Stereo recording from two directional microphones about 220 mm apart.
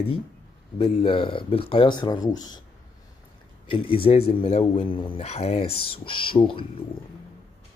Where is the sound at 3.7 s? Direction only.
25° left (ahead or behind).